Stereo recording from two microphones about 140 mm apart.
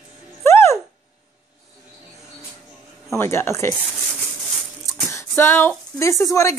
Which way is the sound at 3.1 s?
20° left (ahead or behind).